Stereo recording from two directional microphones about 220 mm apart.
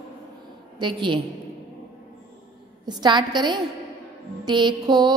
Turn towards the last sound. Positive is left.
turn(degrees=-20)  # may be behind; listen again after turning